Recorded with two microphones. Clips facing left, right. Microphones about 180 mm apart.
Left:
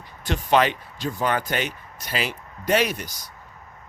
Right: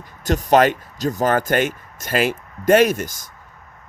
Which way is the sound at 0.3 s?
45° right (ahead or behind).